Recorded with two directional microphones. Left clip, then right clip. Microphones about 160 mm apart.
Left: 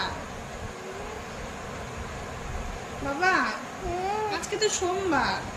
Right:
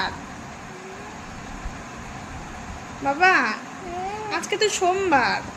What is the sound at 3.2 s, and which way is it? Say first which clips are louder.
A woman's voice: right 6 dB; 60° right (ahead or behind).